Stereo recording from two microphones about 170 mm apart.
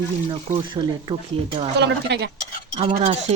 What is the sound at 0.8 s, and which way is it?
Speech, 30° right (ahead or behind).